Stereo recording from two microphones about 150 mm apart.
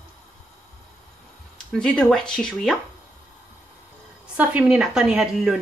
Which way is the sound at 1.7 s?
5° left (ahead or behind).